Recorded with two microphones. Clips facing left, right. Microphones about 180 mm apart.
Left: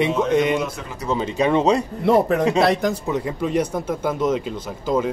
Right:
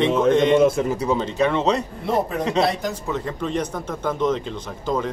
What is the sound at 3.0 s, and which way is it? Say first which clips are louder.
Speech: left 3 dB; 10° left (ahead or behind).